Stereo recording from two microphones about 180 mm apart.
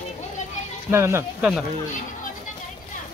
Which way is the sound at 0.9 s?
15° right (ahead or behind).